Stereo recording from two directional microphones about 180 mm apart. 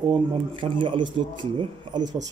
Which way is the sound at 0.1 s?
30° right (ahead or behind).